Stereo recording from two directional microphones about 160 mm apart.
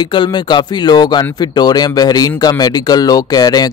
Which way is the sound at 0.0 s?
30° left (ahead or behind).